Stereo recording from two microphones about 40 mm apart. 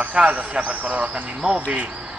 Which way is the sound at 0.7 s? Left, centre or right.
Right.